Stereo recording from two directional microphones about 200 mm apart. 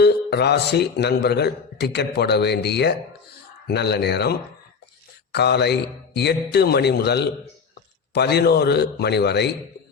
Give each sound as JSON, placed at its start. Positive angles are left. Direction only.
{"t": 0.0, "sound": "a man's voice", "side_deg": 55}